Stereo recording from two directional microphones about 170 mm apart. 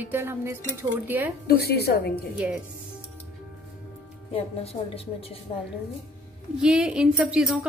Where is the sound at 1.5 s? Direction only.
70° left (ahead or behind).